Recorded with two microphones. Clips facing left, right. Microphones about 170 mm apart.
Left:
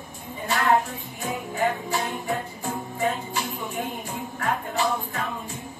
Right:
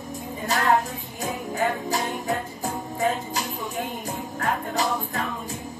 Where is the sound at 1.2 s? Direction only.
40° right (ahead or behind).